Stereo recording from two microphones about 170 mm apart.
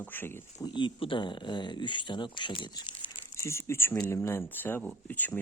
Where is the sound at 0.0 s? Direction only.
10° left (ahead or behind).